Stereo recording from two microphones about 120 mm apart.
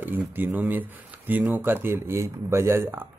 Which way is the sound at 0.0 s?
15° right (ahead or behind).